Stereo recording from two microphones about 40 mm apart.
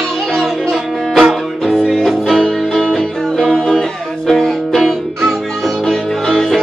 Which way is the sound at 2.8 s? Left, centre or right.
Centre.